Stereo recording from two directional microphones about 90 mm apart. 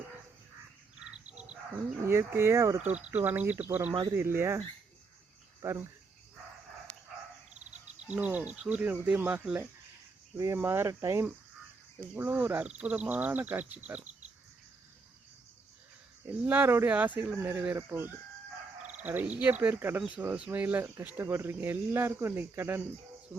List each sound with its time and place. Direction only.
0.9 s frog: 10° right (ahead or behind)
2.0 s speech: 30° right (ahead or behind)
2.9 s speech: 15° right (ahead or behind)
8.0 s speech: 15° right (ahead or behind)
10.3 s speech: 35° right (ahead or behind); by 14.0 s 20° right (ahead or behind)
16.2 s speech: 20° right (ahead or behind)